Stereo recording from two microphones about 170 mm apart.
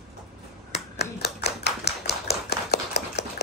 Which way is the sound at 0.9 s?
70° left (ahead or behind).